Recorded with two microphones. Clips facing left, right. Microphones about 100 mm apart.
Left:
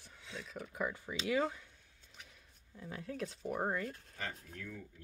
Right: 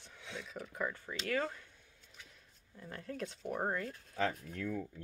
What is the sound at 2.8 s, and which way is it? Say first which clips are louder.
Speech: left 1 dB; centre (ahead or behind).